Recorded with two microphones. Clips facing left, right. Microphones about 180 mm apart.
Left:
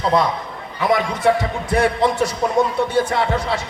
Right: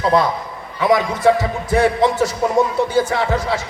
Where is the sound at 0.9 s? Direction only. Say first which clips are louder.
Right 2 dB; 25° right (ahead or behind).